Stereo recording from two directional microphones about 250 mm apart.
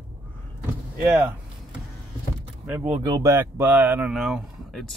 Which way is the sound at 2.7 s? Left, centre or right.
Centre.